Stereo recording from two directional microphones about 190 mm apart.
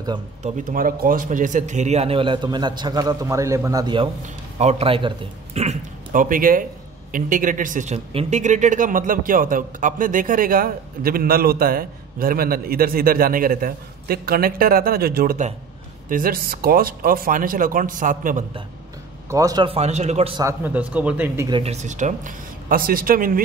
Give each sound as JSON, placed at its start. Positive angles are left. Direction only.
{"t": 0.4, "sound": "a man's voice", "side_deg": -50}
{"t": 4.6, "sound": "a man's voice", "side_deg": -35}
{"t": 19.3, "sound": "speech", "side_deg": -20}
{"t": 20.3, "sound": "a man's voice", "side_deg": -15}
{"t": 21.5, "sound": "a man's voice", "side_deg": -30}